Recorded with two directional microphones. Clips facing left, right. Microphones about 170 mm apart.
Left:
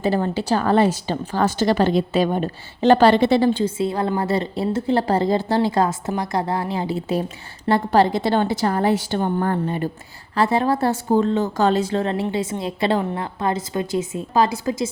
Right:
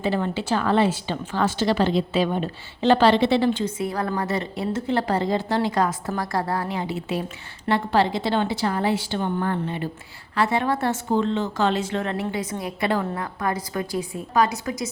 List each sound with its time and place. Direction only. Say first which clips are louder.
0.0 s a woman's voice: left 3 dB; 40° left (ahead or behind)